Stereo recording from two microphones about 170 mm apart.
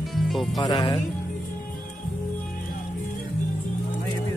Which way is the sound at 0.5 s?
25° left (ahead or behind).